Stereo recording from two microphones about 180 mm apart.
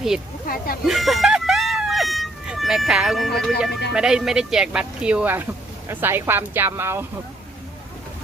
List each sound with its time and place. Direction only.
0.4 s speech: 55° left (ahead or behind)
0.9 s a sound: centre (ahead or behind)
3.9 s speech: 5° right (ahead or behind)